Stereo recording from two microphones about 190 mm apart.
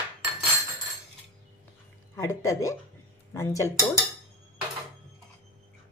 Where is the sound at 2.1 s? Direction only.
15° left (ahead or behind).